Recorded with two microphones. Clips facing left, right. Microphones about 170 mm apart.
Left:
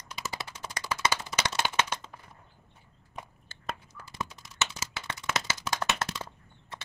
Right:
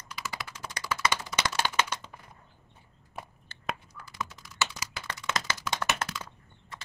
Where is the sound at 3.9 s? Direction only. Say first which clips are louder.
Even; 25° left (ahead or behind).